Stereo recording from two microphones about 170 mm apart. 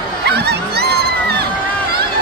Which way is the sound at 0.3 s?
75° right (ahead or behind).